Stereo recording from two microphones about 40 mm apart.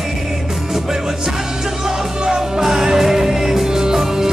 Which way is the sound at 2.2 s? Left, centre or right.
Centre.